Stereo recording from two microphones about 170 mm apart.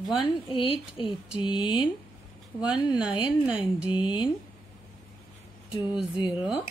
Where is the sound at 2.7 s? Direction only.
5° right (ahead or behind).